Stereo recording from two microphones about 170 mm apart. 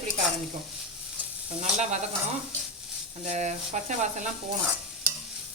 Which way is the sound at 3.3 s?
45° right (ahead or behind).